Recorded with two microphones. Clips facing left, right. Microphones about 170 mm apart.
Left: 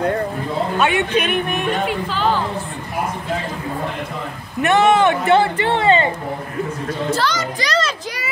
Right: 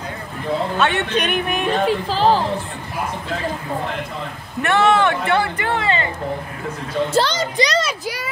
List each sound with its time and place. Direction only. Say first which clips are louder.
0.7 s speech: left 5 dB; 10° left (ahead or behind)
1.9 s speech: right 3 dB; 35° right (ahead or behind)
4.6 s speech: left 2 dB; 20° left (ahead or behind)
7.2 s a child's voice: right 3 dB; 25° right (ahead or behind)
7.7 s a sound: even; 10° right (ahead or behind)